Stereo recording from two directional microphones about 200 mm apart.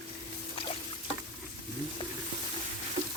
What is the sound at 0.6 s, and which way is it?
Boat, 25° left (ahead or behind).